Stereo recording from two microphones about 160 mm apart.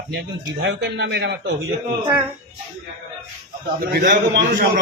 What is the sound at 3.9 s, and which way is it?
Speech, 80° right.